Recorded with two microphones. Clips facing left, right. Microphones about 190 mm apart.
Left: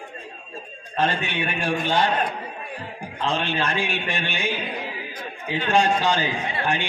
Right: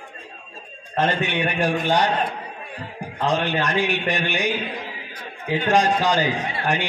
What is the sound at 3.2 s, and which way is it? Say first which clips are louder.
A man's voice: right 3 dB; 15° right (ahead or behind).